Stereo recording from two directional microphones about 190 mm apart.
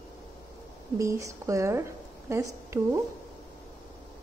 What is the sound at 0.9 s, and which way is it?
Speech, 15° right (ahead or behind).